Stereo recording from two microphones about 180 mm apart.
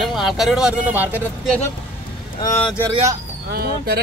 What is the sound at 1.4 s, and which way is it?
Speech, 5° left (ahead or behind).